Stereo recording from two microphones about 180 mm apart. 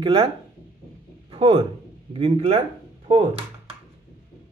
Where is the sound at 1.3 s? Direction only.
30° right (ahead or behind).